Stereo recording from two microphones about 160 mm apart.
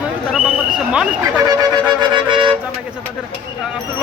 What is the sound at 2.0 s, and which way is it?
Music, 30° right (ahead or behind).